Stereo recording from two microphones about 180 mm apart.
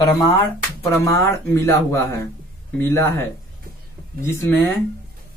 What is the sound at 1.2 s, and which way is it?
Speech, 15° left (ahead or behind).